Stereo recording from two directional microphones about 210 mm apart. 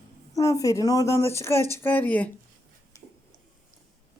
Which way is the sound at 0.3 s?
15° left (ahead or behind).